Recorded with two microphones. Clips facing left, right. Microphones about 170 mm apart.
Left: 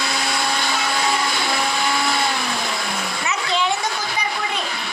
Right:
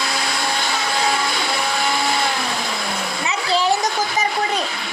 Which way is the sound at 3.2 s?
35° right (ahead or behind).